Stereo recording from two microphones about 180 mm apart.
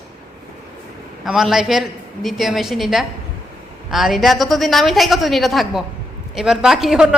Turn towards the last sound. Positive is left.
turn(degrees=-5)  # may be behind; listen again after turning